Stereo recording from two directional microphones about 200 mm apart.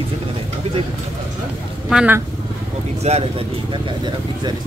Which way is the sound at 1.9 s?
5° right (ahead or behind).